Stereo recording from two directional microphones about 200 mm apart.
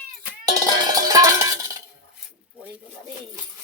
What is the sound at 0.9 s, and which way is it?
Music, 20° right (ahead or behind).